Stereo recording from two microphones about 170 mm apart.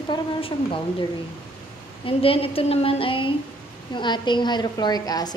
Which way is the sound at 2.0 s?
35° left (ahead or behind).